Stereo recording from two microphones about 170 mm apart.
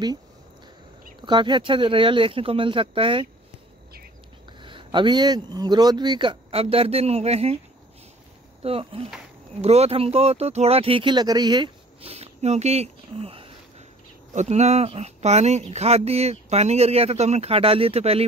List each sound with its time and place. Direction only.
1.2 s speech: 25° right (ahead or behind)
4.6 s a man's voice: 30° right (ahead or behind)
8.6 s speech: 35° right (ahead or behind)